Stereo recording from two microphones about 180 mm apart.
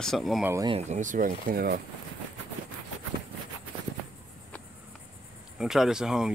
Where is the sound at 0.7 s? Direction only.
40° right (ahead or behind); by 1.8 s 55° right (ahead or behind).